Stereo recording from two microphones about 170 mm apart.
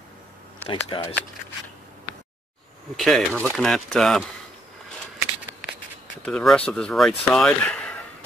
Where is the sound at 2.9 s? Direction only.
Centre (ahead or behind).